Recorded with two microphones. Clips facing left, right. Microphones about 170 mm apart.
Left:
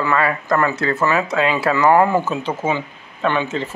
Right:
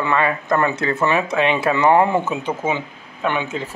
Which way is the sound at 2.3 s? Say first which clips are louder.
Left 1 dB; 15° right (ahead or behind).